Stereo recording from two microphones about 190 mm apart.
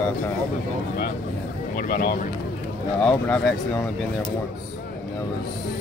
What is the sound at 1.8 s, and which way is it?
Speech, 50° left (ahead or behind).